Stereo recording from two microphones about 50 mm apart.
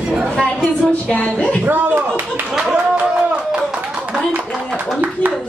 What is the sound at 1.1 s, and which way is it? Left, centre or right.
Speech, left.